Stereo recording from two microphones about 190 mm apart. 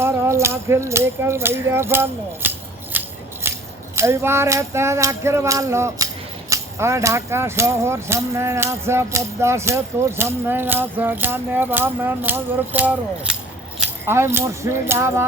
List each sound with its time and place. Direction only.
0.0 s speech: 15° right (ahead or behind)
2.9 s scissors: 10° right (ahead or behind)
3.4 s a sound: 15° right (ahead or behind)
3.9 s speech: 15° right (ahead or behind)